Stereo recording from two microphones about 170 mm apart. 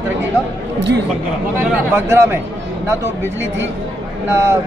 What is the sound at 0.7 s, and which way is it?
Speech, 90° right.